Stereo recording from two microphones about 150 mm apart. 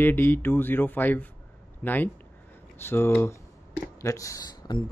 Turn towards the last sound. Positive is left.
turn(degrees=25)  # may be behind; listen again after turning